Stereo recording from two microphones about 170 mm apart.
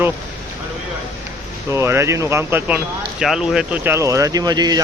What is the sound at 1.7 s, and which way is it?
Speech, 15° right (ahead or behind).